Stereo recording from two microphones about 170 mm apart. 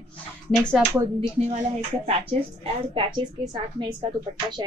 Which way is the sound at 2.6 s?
35° right (ahead or behind).